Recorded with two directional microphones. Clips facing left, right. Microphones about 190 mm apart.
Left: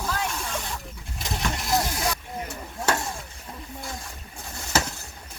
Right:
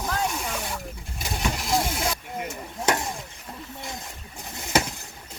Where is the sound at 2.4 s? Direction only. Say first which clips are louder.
Right 2 dB; 15° right (ahead or behind).